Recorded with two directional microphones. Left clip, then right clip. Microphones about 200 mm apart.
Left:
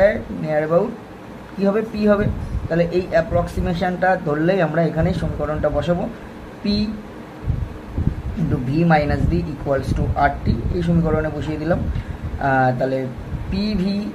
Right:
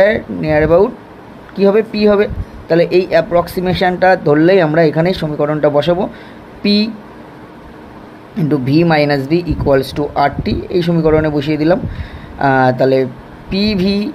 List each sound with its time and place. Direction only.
0.0 s speech: 40° right (ahead or behind)
8.6 s speech: 40° right (ahead or behind)